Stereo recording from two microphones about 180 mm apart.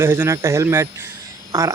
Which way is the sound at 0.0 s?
15° right (ahead or behind).